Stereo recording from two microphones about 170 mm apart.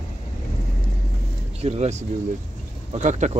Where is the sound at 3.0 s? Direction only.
45° right (ahead or behind).